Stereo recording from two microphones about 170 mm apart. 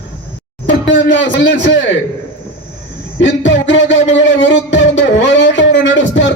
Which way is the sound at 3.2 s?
90° left.